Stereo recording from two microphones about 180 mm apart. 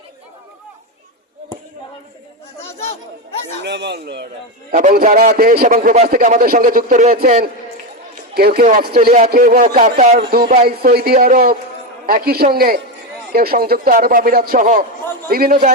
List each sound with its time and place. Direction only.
3.6 s speech: 70° right (ahead or behind)
4.7 s a man's voice: 45° right (ahead or behind)
10.2 s a man's voice: 55° right (ahead or behind)